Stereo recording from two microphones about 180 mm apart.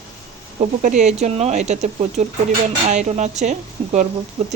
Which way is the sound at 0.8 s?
40° right (ahead or behind).